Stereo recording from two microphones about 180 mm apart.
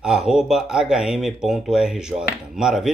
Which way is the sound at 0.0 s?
5° right (ahead or behind).